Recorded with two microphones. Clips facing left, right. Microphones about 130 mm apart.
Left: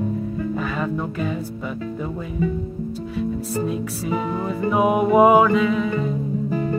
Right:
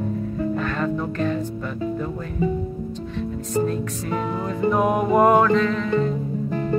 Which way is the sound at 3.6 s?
5° left (ahead or behind).